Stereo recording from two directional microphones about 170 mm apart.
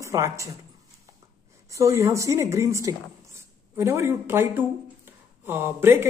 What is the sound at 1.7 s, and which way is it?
A woman's voice, 15° right (ahead or behind).